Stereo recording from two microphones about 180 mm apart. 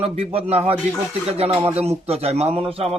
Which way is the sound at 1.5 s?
15° right (ahead or behind).